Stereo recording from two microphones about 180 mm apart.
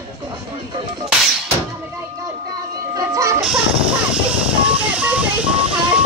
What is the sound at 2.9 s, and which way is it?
Music, 15° right (ahead or behind).